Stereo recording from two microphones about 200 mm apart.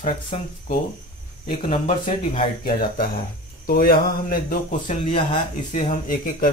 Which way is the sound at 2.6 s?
50° left (ahead or behind).